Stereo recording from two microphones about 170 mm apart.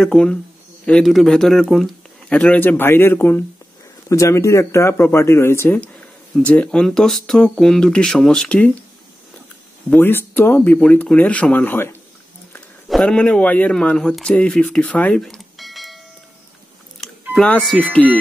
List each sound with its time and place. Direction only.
0.0 s speech: 5° left (ahead or behind)
9.8 s speech: 10° left (ahead or behind)
17.0 s speech: centre (ahead or behind)